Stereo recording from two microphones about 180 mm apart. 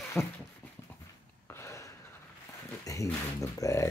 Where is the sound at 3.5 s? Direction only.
15° left (ahead or behind).